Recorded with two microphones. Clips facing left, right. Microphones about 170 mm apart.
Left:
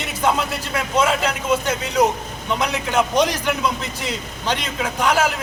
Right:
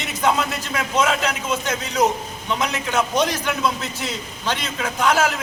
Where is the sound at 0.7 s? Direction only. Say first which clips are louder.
Left 1 dB; 10° left (ahead or behind).